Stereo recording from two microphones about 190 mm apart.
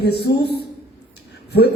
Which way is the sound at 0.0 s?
60° left (ahead or behind).